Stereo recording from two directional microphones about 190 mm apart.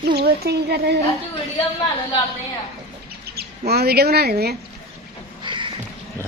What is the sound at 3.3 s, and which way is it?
Speech, 55° right (ahead or behind).